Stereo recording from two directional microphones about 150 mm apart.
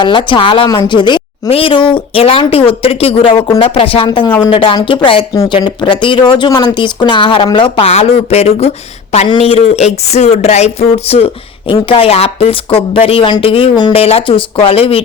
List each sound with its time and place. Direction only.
0.0 s speech: 30° left (ahead or behind)